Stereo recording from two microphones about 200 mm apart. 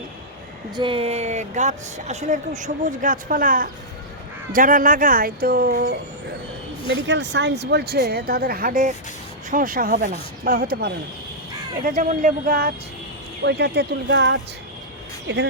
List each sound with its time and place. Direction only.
0.8 s speech: 25° right (ahead or behind); by 6.0 s 50° right (ahead or behind)
6.8 s speech: 60° right (ahead or behind)
13.4 s a woman's voice: 55° right (ahead or behind)